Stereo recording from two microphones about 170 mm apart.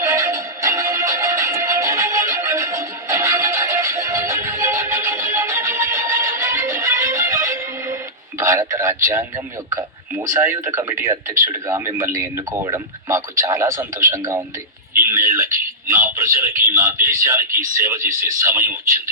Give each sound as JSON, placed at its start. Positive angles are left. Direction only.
{"t": 0.0, "sound": "music", "side_deg": -20}
{"t": 8.4, "sound": "a man's voice", "side_deg": -15}